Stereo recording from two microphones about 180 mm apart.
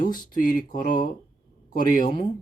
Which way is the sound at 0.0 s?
50° left (ahead or behind).